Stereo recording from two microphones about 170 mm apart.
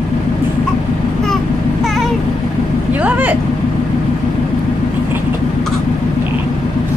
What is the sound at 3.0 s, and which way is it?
Vehicle, 10° right (ahead or behind).